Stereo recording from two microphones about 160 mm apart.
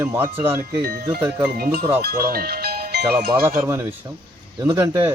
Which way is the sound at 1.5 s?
75° right (ahead or behind).